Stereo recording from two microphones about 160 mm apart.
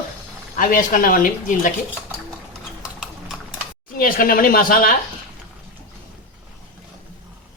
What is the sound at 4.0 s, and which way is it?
Speech, 65° left (ahead or behind).